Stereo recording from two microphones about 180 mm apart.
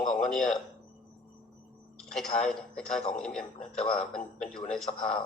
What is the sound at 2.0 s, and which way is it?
A man's voice, centre (ahead or behind).